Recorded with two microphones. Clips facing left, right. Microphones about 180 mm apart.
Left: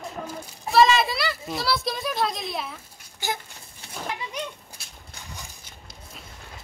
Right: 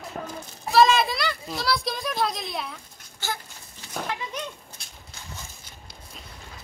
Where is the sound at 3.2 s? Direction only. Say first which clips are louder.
Left 2 dB; 15° left (ahead or behind).